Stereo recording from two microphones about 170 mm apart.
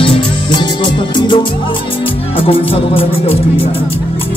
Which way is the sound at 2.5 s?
35° left (ahead or behind).